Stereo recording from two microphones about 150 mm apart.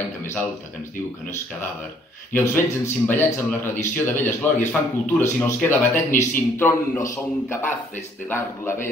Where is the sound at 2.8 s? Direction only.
15° left (ahead or behind).